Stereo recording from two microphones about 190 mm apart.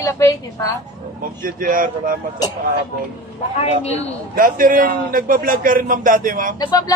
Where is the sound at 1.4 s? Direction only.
45° right (ahead or behind).